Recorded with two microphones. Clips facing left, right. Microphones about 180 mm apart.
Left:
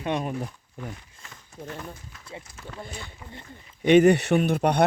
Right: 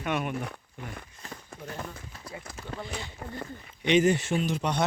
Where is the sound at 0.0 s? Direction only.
30° left (ahead or behind).